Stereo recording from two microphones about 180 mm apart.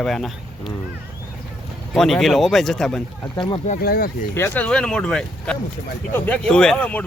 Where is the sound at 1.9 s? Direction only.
Centre (ahead or behind).